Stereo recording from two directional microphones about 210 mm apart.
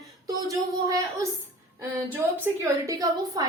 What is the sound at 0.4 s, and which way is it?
A woman's voice, 15° right (ahead or behind).